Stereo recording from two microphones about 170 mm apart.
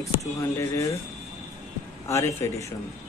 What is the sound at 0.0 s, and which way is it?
Speech, 20° left (ahead or behind).